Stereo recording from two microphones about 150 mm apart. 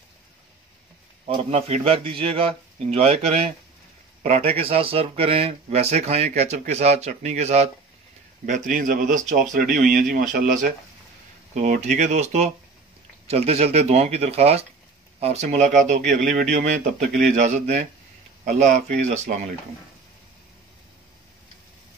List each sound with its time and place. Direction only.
1.3 s speech: 40° right (ahead or behind)
8.5 s speech: 60° right (ahead or behind)